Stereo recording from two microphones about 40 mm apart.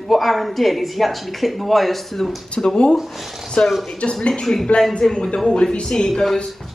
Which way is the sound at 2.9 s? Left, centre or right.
Centre.